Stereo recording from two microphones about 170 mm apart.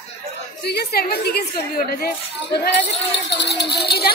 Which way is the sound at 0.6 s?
70° left (ahead or behind).